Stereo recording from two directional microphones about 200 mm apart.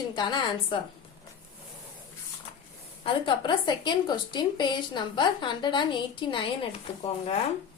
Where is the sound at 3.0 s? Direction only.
25° left (ahead or behind).